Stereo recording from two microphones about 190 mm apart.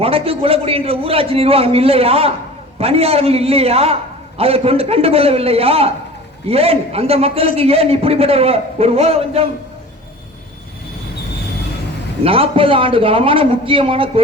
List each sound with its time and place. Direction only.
0.0 s a man's voice: 30° right (ahead or behind)
12.2 s a man's voice: 30° right (ahead or behind)